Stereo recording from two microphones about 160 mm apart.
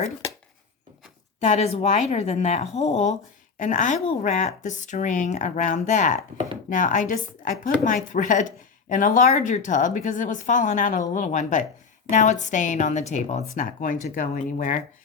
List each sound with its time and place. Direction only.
1.4 s a woman's voice: 45° left (ahead or behind)